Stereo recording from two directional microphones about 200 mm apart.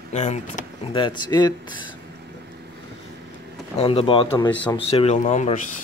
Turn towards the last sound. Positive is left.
turn(degrees=35)  # may be behind; listen again after turning